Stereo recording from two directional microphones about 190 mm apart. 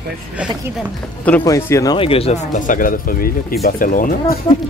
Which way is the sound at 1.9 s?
30° left (ahead or behind).